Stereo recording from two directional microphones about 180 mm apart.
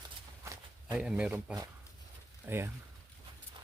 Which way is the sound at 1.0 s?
5° right (ahead or behind).